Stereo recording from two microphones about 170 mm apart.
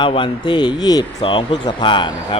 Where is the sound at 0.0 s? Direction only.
30° left (ahead or behind).